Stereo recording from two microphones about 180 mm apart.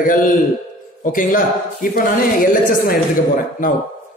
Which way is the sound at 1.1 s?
50° left (ahead or behind).